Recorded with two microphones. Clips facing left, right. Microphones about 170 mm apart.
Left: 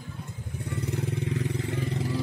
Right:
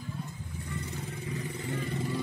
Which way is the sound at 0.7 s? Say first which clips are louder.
Left 8 dB; 75° left (ahead or behind).